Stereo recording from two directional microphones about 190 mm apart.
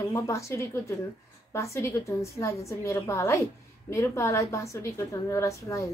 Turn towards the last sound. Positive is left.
turn(degrees=15)  # may be behind; listen again after turning